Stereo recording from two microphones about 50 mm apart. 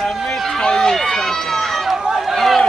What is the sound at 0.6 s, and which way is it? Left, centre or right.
Run, centre.